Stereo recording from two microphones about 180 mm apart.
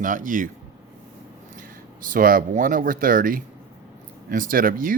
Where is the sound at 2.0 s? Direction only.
50° right (ahead or behind).